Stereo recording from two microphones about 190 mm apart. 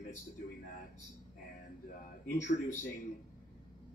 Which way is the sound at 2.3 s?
40° left (ahead or behind).